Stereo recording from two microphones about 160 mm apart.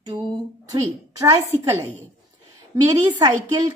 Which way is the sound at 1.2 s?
15° right (ahead or behind).